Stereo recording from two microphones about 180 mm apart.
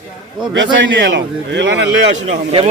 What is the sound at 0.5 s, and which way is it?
A man's voice, 90° right.